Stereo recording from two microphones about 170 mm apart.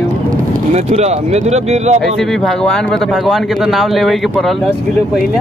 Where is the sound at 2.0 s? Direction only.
Centre (ahead or behind).